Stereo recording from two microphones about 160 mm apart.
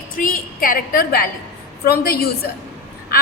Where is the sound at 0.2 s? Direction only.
60° left (ahead or behind).